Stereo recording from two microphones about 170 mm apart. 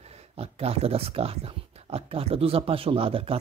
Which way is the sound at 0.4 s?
35° right (ahead or behind).